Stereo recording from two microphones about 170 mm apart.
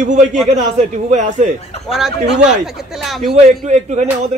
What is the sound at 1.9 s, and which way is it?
Speech, 5° right (ahead or behind).